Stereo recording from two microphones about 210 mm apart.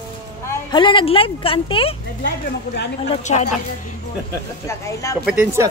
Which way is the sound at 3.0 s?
35° left (ahead or behind).